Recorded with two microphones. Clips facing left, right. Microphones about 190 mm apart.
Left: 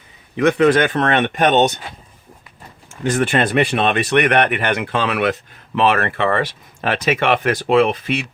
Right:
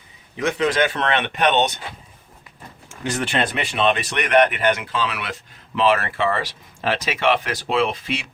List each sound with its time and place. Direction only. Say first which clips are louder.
0.3 s speech: left 7 dB; 60° left (ahead or behind); by 1.8 s 45° left (ahead or behind)
3.0 s speech: left 6 dB; 50° left (ahead or behind)